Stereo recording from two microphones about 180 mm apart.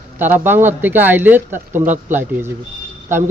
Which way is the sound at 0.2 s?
10° right (ahead or behind).